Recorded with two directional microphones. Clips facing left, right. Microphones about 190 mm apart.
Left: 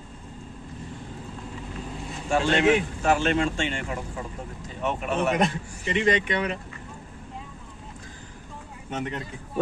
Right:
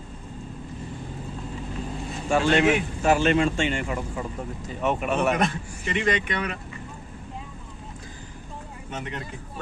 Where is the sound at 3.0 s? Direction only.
10° right (ahead or behind).